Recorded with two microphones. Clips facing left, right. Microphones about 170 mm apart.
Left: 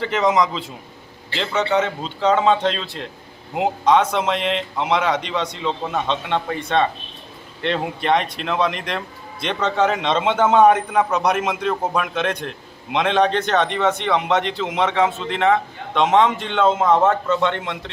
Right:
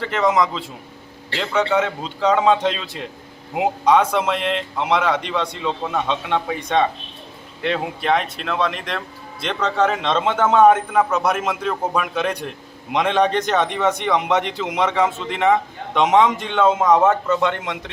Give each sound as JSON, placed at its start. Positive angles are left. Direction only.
{"t": 0.0, "sound": "a man's voice", "side_deg": 0}
{"t": 7.6, "sound": "speech", "side_deg": -5}
{"t": 10.9, "sound": "a man's voice", "side_deg": -5}